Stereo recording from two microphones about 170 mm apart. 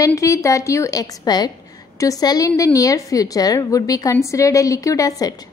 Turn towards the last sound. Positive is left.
turn(degrees=20)  # may be behind; listen again after turning